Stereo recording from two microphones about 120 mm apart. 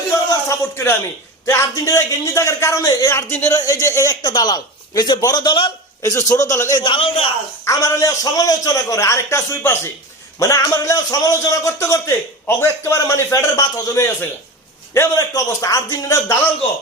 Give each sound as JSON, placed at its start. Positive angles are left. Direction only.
{"t": 0.3, "sound": "a man's voice", "side_deg": 25}
{"t": 6.8, "sound": "a man's voice", "side_deg": 50}
{"t": 7.6, "sound": "a man's voice", "side_deg": 25}